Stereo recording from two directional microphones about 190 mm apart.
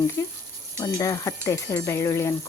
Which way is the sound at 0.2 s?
15° left (ahead or behind).